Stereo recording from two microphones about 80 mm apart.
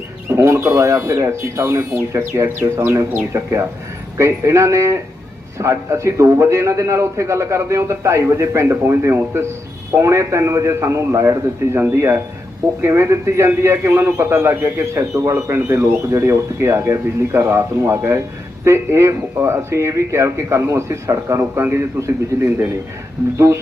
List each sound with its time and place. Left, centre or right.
0.3 s a man's voice: right
21.5 s a man's voice: right